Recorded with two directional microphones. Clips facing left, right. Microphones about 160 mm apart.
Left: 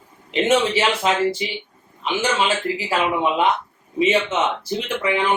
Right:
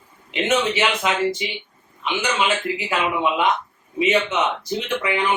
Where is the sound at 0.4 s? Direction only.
30° left (ahead or behind).